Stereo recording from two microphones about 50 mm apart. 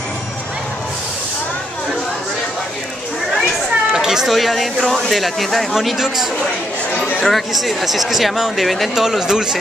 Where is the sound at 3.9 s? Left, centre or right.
Centre.